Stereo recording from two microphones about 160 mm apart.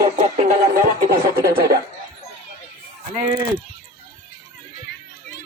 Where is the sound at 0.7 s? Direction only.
60° right (ahead or behind).